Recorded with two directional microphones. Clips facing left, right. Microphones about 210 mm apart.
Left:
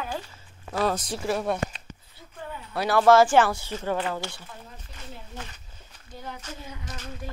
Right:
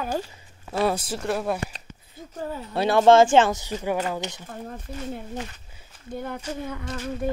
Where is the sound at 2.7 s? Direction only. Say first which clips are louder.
Right 2 dB; 25° right (ahead or behind).